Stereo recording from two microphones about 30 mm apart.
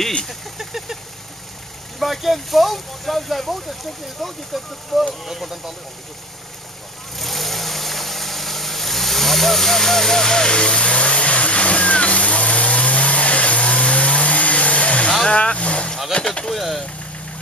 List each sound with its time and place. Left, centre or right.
0.3 s speech: centre
2.0 s speech: centre
7.2 s vehicle: centre; by 15.0 s left
15.2 s speech: left
16.1 s speech: left
16.5 s speech: centre